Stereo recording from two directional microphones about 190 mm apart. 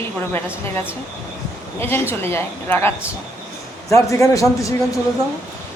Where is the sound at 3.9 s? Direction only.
15° left (ahead or behind).